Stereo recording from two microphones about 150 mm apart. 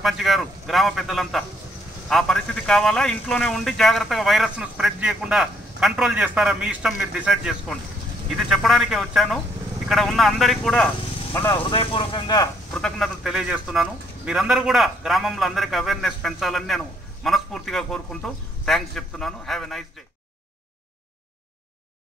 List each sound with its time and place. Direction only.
0.0 s a man's voice: centre (ahead or behind)
11.7 s speech: 35° left (ahead or behind)
12.7 s a man's voice: 5° left (ahead or behind)